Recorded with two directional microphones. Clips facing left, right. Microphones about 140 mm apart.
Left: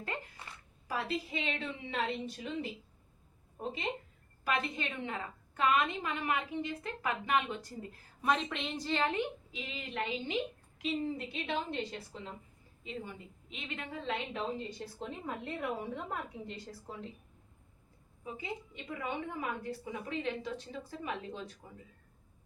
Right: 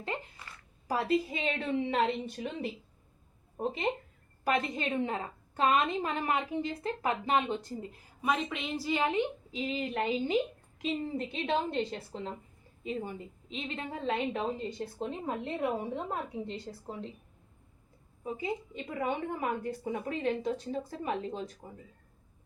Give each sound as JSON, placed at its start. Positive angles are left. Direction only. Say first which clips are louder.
{"t": 0.9, "sound": "a woman's voice", "louder": "right 7 dB", "side_deg": -40}
{"t": 1.5, "sound": "a woman's voice", "louder": "right 8 dB", "side_deg": -55}
{"t": 4.4, "sound": "a woman's voice", "louder": "right 4 dB", "side_deg": -35}
{"t": 8.2, "sound": "a woman's voice", "louder": "right 1 dB", "side_deg": -5}
{"t": 9.5, "sound": "a woman's voice", "louder": "right 9 dB", "side_deg": -40}
{"t": 13.5, "sound": "a woman's voice", "louder": "right 5 dB", "side_deg": -30}
{"t": 18.2, "sound": "a woman's voice", "louder": "right 6 dB", "side_deg": -35}